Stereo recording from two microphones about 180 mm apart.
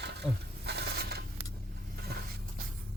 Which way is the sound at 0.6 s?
65° right (ahead or behind).